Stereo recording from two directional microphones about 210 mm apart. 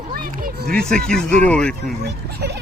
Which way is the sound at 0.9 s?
5° left (ahead or behind).